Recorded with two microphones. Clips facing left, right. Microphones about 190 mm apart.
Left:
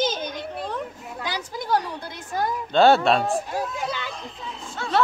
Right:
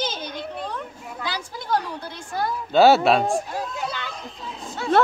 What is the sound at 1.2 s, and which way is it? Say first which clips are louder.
A woman's voice: left 1 dB; 15° left (ahead or behind).